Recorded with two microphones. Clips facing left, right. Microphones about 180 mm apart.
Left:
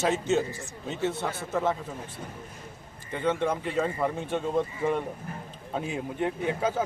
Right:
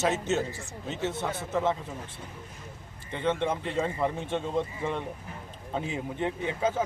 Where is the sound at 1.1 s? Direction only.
20° right (ahead or behind).